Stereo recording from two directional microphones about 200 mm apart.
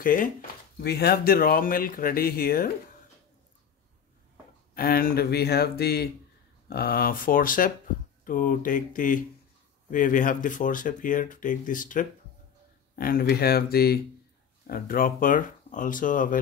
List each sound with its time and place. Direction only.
0.0 s speech: 45° left (ahead or behind)
4.7 s speech: 45° left (ahead or behind)